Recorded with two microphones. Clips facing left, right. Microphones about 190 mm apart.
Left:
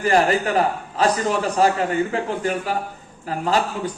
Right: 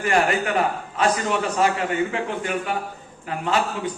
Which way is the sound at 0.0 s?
35° left (ahead or behind).